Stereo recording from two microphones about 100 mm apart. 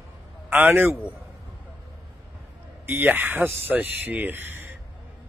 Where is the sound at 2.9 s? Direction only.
20° right (ahead or behind).